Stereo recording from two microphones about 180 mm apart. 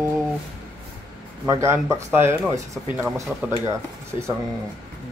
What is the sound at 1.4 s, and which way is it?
Speech, 15° right (ahead or behind).